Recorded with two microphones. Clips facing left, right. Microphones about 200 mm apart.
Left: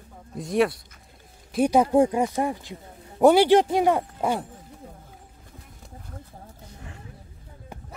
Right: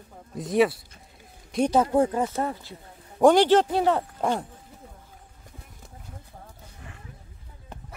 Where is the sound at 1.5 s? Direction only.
10° left (ahead or behind).